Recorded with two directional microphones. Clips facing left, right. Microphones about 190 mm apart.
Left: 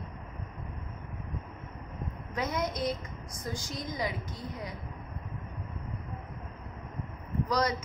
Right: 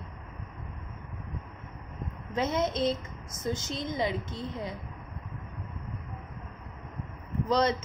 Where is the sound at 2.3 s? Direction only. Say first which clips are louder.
Right 4 dB; 25° right (ahead or behind).